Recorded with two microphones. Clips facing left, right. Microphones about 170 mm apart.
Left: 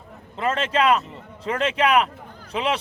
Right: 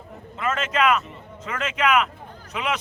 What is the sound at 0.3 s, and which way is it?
A man's voice, 30° left (ahead or behind).